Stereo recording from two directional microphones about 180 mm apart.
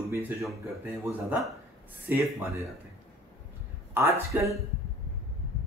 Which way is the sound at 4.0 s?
15° right (ahead or behind).